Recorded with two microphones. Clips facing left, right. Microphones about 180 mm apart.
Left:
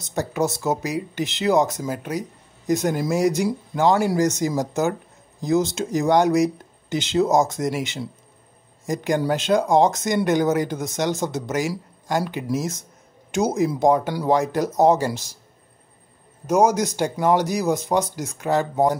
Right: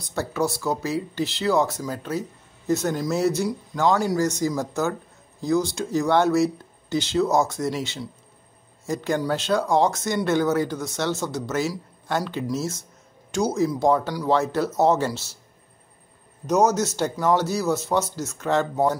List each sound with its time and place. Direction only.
0.0 s speech: 15° left (ahead or behind)
16.4 s speech: 10° left (ahead or behind)